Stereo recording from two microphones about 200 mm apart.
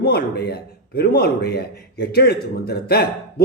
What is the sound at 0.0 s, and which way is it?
A man's voice, 55° left (ahead or behind).